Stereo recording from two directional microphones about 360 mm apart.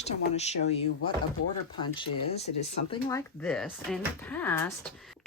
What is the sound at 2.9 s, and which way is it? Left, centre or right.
Speech, centre.